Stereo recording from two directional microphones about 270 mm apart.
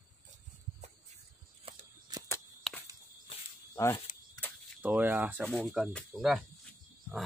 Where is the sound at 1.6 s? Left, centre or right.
Centre.